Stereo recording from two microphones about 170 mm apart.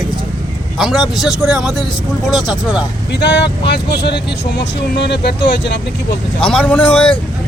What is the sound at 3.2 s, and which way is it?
Speech, 85° left.